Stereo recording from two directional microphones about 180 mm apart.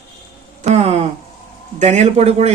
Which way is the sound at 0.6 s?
35° right (ahead or behind).